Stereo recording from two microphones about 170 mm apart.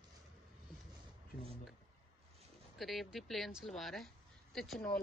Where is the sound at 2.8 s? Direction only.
Centre (ahead or behind).